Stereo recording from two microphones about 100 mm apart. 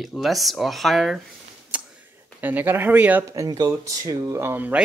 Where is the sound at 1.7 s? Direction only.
15° right (ahead or behind).